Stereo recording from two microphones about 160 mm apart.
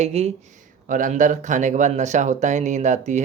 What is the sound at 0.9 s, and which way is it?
Speech, 55° right (ahead or behind).